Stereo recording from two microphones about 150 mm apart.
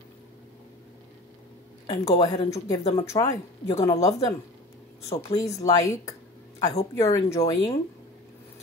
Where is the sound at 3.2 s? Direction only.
40° left (ahead or behind).